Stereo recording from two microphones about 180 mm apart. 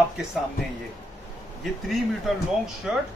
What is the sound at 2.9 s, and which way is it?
Speech, 5° right (ahead or behind).